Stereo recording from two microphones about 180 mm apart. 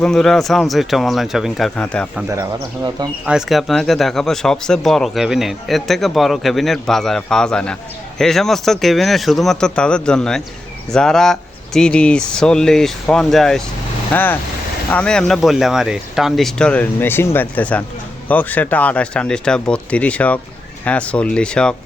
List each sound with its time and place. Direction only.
0.0 s speech: 5° left (ahead or behind)
2.3 s speech: 20° right (ahead or behind)
3.2 s speech: centre (ahead or behind)